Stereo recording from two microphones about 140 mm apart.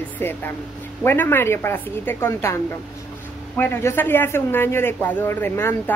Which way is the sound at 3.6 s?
15° left (ahead or behind).